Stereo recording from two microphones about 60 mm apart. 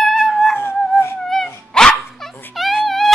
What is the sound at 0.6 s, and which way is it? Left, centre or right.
Music, left.